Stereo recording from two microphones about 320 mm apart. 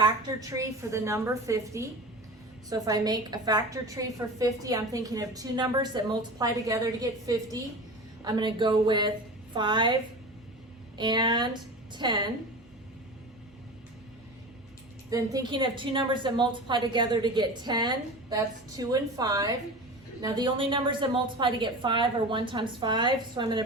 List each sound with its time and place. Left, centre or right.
0.0 s a woman's voice: centre
10.9 s a woman's voice: centre
15.1 s a woman's voice: centre